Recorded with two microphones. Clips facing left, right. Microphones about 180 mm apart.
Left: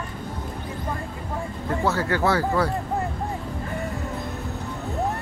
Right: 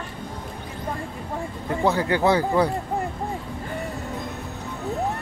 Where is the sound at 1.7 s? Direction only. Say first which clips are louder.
Right 2 dB; 15° right (ahead or behind).